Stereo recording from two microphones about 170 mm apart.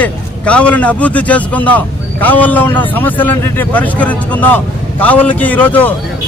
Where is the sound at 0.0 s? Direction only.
5° left (ahead or behind).